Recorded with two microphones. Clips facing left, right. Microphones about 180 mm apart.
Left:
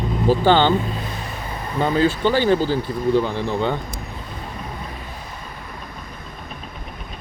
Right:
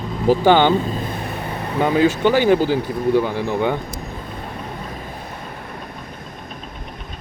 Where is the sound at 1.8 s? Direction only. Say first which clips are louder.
Right 2 dB; 15° right (ahead or behind).